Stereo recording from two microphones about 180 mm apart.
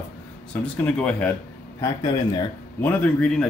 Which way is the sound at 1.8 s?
20° left (ahead or behind).